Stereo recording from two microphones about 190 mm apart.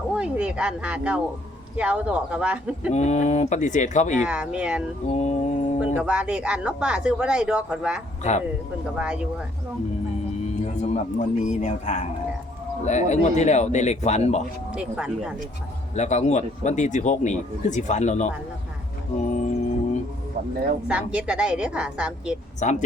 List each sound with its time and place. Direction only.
0.1 s speech: 5° right (ahead or behind)
2.9 s speech: 35° left (ahead or behind)
4.3 s speech: 5° right (ahead or behind)
5.1 s speech: 40° left (ahead or behind)
6.0 s speech: 5° right (ahead or behind)
8.2 s speech: 35° left (ahead or behind)
9.0 s speech: 5° right (ahead or behind)
10.5 s speech: 35° left (ahead or behind)
14.7 s speech: 5° right (ahead or behind)
16.0 s speech: 35° left (ahead or behind)
20.8 s speech: 5° right (ahead or behind)
22.6 s speech: 40° left (ahead or behind)